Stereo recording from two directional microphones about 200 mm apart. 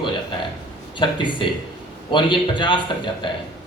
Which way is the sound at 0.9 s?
25° left (ahead or behind).